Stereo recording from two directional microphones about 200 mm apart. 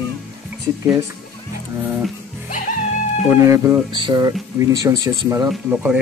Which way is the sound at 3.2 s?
10° right (ahead or behind).